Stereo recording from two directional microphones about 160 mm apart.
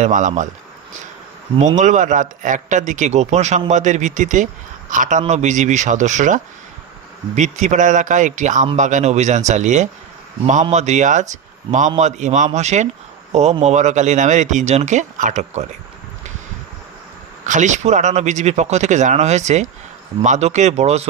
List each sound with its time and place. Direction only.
0.0 s a man's voice: 50° right (ahead or behind)
1.8 s a man's voice: 50° right (ahead or behind)
17.5 s a man's voice: 50° right (ahead or behind)